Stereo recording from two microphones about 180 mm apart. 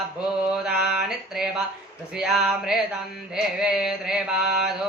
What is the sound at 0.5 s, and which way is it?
Mantra, 5° right (ahead or behind).